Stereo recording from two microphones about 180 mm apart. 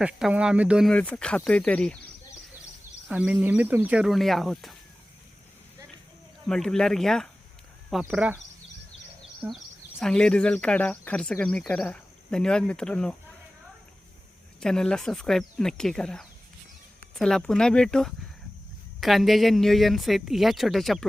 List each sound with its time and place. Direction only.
0.0 s speech: 5° right (ahead or behind)
0.9 s speech: 5° left (ahead or behind)
3.1 s speech: 5° right (ahead or behind)
6.4 s speech: 5° left (ahead or behind)
8.0 s speech: 10° right (ahead or behind)
10.0 s speech: 5° left (ahead or behind)
14.6 s speech: 5° left (ahead or behind)